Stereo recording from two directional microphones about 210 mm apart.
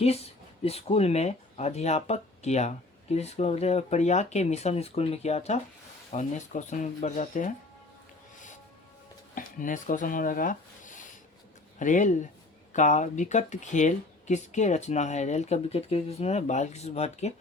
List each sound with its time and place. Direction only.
0.0 s speech: 30° left (ahead or behind)
9.3 s speech: 40° left (ahead or behind)